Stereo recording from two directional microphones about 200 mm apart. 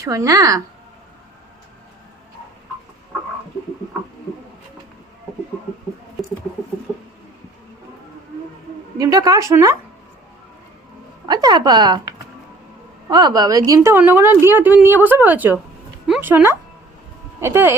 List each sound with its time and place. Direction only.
0.0 s a woman's voice: 15° right (ahead or behind)
9.0 s a woman's voice: 15° right (ahead or behind)
11.3 s a woman's voice: 20° right (ahead or behind)